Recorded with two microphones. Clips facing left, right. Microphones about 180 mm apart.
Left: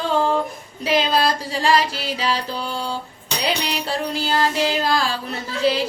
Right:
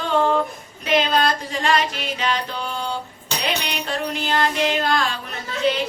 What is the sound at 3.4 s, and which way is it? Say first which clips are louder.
Music: left 2 dB; 35° left (ahead or behind).